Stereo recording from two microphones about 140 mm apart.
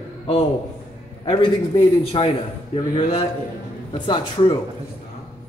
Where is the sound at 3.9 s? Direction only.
35° left (ahead or behind).